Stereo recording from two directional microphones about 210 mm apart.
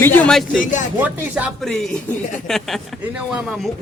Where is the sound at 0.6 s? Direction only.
40° left (ahead or behind).